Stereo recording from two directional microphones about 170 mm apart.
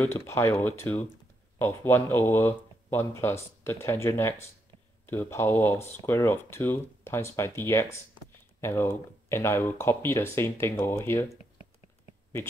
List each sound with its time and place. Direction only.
0.0 s speech: 15° left (ahead or behind)